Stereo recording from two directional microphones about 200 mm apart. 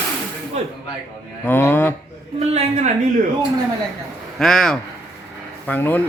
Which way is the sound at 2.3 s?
30° right (ahead or behind).